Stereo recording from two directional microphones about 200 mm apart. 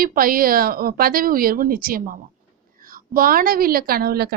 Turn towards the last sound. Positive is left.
turn(degrees=-50)  # may be behind; listen again after turning